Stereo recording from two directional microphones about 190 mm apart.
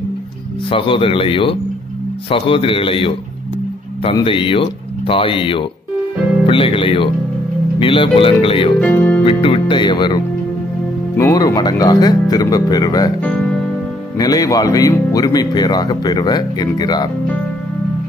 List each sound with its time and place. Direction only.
0.7 s speech: 25° left (ahead or behind)
8.8 s speech: 10° left (ahead or behind)
9.2 s speech: 25° left (ahead or behind)
13.2 s music: centre (ahead or behind)
14.1 s speech: 20° left (ahead or behind)